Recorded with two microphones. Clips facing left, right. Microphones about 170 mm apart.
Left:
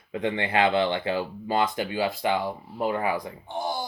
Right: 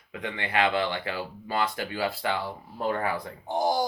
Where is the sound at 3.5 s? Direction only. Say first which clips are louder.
Right 5 dB; 40° right (ahead or behind).